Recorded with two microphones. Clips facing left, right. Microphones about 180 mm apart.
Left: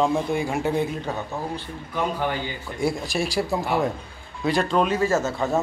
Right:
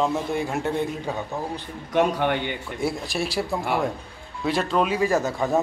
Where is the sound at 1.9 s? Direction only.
75° right (ahead or behind).